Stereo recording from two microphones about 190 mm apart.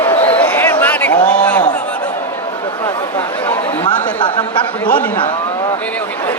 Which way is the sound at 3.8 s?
25° left (ahead or behind).